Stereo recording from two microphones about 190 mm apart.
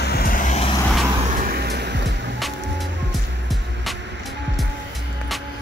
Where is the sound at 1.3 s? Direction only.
50° right (ahead or behind); by 2.3 s 65° right (ahead or behind).